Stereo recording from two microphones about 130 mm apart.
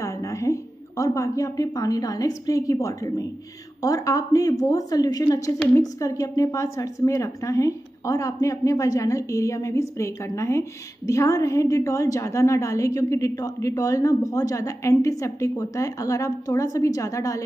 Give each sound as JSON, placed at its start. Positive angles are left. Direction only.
{"t": 0.0, "sound": "a woman's voice", "side_deg": 25}